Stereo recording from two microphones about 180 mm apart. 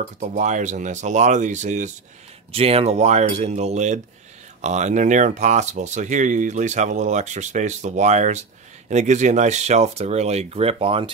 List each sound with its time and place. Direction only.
0.0 s speech: 40° right (ahead or behind)